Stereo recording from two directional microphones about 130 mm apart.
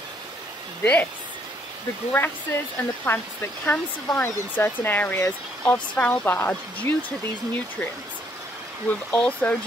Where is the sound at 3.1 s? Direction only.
20° left (ahead or behind).